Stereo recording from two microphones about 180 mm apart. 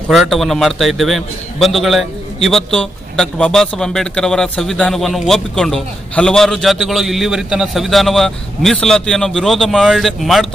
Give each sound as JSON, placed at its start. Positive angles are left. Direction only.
{"t": 0.1, "sound": "a man's voice", "side_deg": 0}